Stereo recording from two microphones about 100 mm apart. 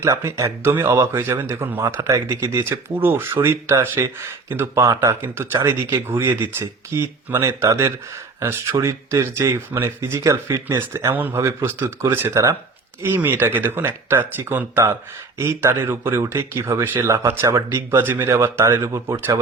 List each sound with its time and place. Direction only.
0.0 s speech: 30° right (ahead or behind)